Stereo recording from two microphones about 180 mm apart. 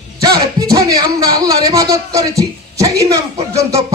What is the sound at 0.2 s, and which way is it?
A man's voice, 20° right (ahead or behind).